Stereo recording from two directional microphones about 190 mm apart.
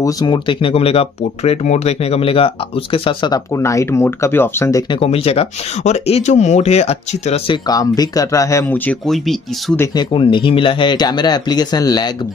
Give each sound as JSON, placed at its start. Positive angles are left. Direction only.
{"t": 0.0, "sound": "speech", "side_deg": 20}
{"t": 5.0, "sound": "speech", "side_deg": 30}
{"t": 7.6, "sound": "speech", "side_deg": 20}
{"t": 10.1, "sound": "speech", "side_deg": 25}